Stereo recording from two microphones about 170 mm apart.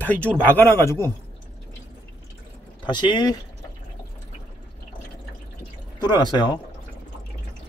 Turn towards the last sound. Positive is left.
turn(degrees=25)  # may be behind; listen again after turning